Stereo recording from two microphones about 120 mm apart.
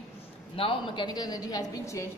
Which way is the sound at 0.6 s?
50° left (ahead or behind).